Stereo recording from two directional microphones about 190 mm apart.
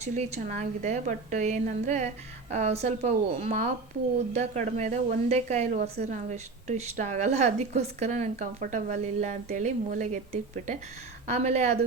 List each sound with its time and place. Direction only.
0.1 s a woman's voice: 40° right (ahead or behind)